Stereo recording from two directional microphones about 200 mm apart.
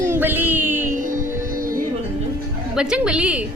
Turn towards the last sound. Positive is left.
turn(degrees=-5)  # may be behind; listen again after turning